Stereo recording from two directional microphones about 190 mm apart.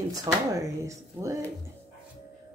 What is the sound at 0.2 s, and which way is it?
A woman's voice, 15° right (ahead or behind).